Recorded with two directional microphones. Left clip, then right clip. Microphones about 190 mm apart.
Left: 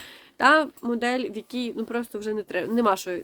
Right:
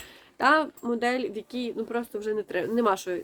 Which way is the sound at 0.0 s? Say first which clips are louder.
Left 4 dB; 40° left (ahead or behind).